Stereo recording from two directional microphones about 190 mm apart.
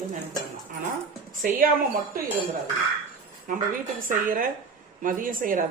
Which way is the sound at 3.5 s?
45° right (ahead or behind).